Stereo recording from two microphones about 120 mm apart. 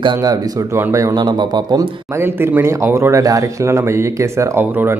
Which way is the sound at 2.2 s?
20° right (ahead or behind).